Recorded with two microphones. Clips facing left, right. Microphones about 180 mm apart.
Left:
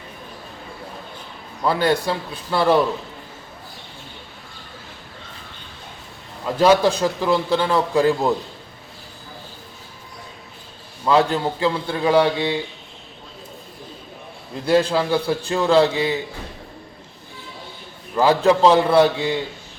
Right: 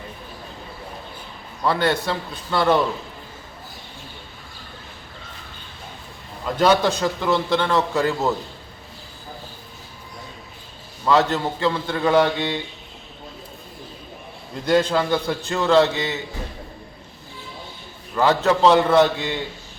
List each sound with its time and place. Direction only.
1.6 s a man's voice: 10° left (ahead or behind)
6.4 s a man's voice: 10° left (ahead or behind)
11.3 s a man's voice: 10° left (ahead or behind)
14.6 s a man's voice: 10° left (ahead or behind)
18.1 s a man's voice: 10° left (ahead or behind)